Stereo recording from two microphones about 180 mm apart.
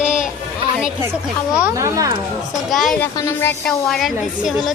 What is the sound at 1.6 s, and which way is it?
Speech, 15° right (ahead or behind).